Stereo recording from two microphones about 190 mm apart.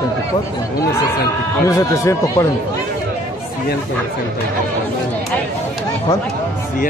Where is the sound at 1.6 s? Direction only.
15° left (ahead or behind).